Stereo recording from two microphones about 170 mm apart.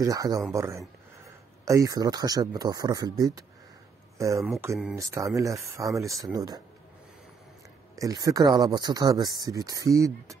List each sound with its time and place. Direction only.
0.0 s speech: 20° right (ahead or behind)
7.9 s speech: 20° right (ahead or behind)